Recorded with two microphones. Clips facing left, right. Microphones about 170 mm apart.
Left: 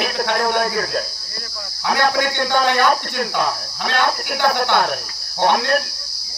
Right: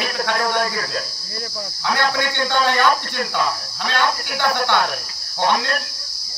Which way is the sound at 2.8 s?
50° left (ahead or behind).